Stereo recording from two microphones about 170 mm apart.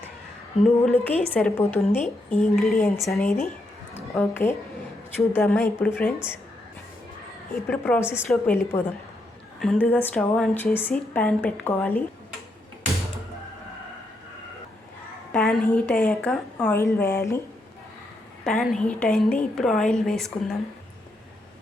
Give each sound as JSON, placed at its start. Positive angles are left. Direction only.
{"t": 0.6, "sound": "a woman's voice", "side_deg": 10}
{"t": 2.8, "sound": "a woman's voice", "side_deg": 15}
{"t": 7.7, "sound": "a woman's voice", "side_deg": 10}
{"t": 15.3, "sound": "a woman's voice", "side_deg": 10}
{"t": 18.4, "sound": "a woman's voice", "side_deg": 0}